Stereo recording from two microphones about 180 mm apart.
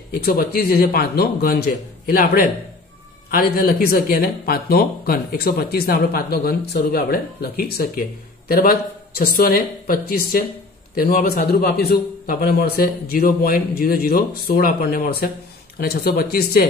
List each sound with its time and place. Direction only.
0.1 s speech: 55° left (ahead or behind)